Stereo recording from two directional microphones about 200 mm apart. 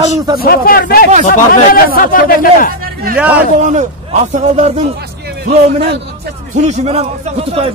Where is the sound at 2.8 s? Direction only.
45° right (ahead or behind).